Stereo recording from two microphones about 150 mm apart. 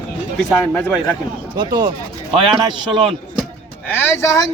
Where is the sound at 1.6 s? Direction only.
25° right (ahead or behind).